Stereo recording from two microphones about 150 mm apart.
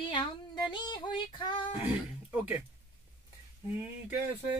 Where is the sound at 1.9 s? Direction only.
10° right (ahead or behind).